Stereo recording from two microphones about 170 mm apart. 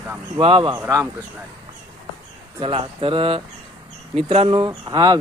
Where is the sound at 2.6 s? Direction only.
30° right (ahead or behind).